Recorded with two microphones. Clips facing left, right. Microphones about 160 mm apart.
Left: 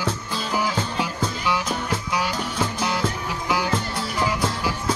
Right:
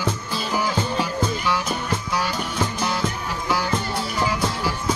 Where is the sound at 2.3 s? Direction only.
Centre (ahead or behind).